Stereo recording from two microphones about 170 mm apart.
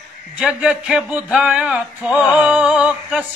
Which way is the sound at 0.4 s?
5° right (ahead or behind).